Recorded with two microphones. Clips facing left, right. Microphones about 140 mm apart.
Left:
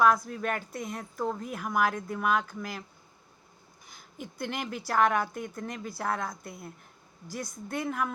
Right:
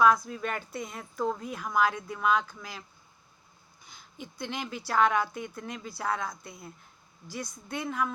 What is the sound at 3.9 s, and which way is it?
A woman's voice, 45° left (ahead or behind).